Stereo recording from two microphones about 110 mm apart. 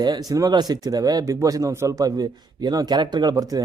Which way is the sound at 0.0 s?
35° right (ahead or behind).